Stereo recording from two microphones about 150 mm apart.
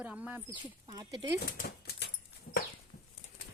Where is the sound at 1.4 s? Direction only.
80° left.